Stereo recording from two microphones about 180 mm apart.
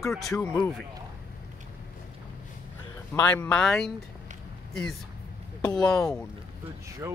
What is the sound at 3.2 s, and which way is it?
Speech, 10° left (ahead or behind).